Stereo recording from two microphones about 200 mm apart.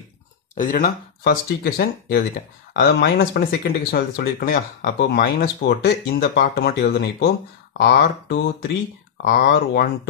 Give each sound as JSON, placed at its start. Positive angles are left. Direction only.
{"t": 0.6, "sound": "speech", "side_deg": 45}
{"t": 9.2, "sound": "speech", "side_deg": 45}